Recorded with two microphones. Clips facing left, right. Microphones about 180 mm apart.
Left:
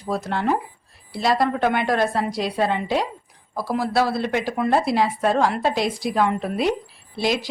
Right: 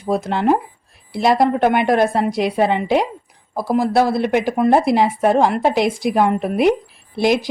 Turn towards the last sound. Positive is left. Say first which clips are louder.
# right 6 dB
turn(degrees=-50)  # may be behind; listen again after turning